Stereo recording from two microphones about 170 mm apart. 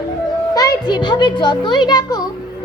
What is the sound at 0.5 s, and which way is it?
A child's voice, 25° left (ahead or behind).